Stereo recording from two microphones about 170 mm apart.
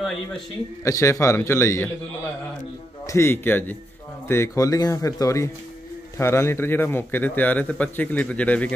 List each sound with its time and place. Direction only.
0.8 s a man's voice: 20° left (ahead or behind)
3.1 s a man's voice: 15° left (ahead or behind)